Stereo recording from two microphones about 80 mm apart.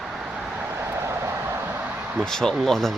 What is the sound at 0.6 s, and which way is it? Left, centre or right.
Vehicle, right.